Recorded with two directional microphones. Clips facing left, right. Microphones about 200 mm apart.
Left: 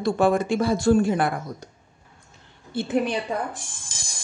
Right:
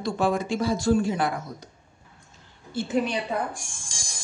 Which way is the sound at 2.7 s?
55° left (ahead or behind).